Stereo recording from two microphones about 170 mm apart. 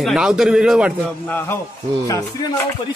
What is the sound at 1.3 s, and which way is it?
Speech, 15° left (ahead or behind).